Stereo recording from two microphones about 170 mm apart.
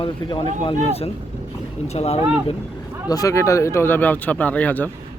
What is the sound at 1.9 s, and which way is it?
Speech, 40° left (ahead or behind).